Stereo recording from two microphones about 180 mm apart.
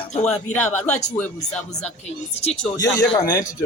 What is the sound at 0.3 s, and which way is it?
Speech, 10° left (ahead or behind).